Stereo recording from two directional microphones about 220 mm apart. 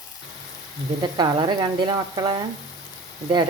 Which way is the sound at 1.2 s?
20° right (ahead or behind).